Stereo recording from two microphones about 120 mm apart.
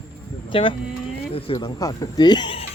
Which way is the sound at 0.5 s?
45° left (ahead or behind).